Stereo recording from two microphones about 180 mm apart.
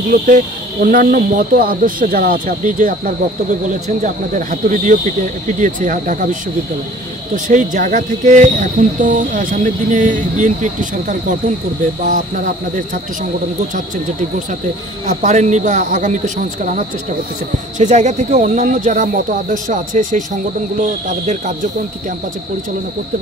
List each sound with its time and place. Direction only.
0.1 s speech: 50° right (ahead or behind)
7.4 s speech: 45° right (ahead or behind)
15.0 s speech: 40° right (ahead or behind)
17.7 s speech: 40° right (ahead or behind)